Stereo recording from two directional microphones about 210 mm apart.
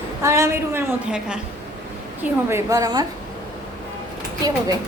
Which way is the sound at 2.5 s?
15° right (ahead or behind).